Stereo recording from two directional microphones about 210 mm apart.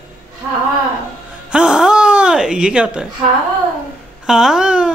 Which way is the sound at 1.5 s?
5° right (ahead or behind).